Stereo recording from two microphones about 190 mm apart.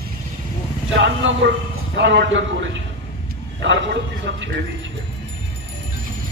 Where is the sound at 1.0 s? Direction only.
70° right (ahead or behind).